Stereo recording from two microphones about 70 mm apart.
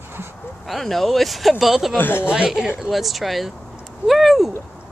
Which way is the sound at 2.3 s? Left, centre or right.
Centre.